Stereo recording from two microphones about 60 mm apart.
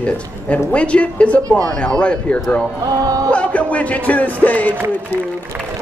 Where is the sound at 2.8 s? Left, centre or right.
Right.